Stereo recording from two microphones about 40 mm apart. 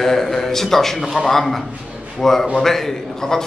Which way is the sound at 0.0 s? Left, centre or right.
Centre.